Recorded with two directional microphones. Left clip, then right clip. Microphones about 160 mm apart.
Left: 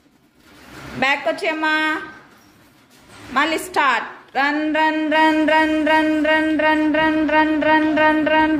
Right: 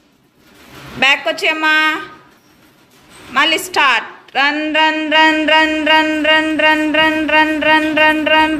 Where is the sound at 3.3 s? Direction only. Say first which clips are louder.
Right 5 dB; 5° left (ahead or behind).